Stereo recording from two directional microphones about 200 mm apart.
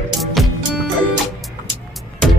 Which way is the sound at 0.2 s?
Centre (ahead or behind).